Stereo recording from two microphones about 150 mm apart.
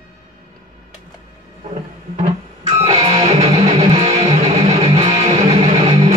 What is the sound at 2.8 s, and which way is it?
Music, 40° right (ahead or behind).